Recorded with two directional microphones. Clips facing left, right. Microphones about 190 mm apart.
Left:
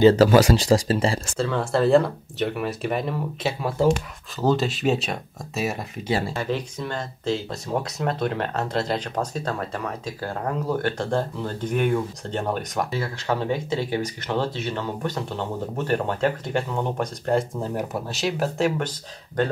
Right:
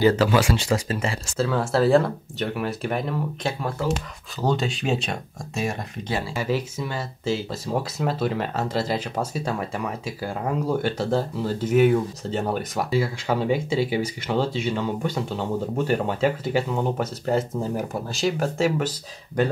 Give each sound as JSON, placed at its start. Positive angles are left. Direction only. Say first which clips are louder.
{"t": 0.1, "sound": "speech", "louder": "left 4 dB", "side_deg": 40}
{"t": 1.3, "sound": "speech", "louder": "right 1 dB", "side_deg": -5}